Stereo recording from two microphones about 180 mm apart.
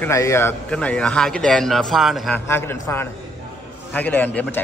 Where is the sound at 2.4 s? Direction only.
15° left (ahead or behind).